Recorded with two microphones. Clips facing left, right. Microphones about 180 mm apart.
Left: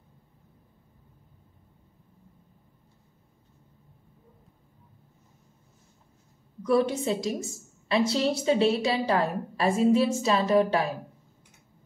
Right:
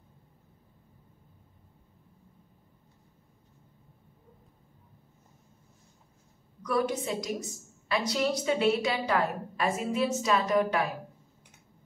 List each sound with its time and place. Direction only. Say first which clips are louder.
6.6 s a woman's voice: left 5 dB; 25° left (ahead or behind)